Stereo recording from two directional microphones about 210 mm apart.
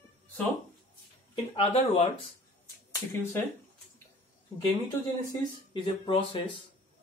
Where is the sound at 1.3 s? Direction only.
30° left (ahead or behind).